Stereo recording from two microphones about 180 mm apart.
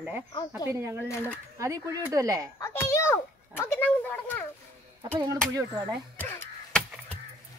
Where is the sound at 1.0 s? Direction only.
10° left (ahead or behind).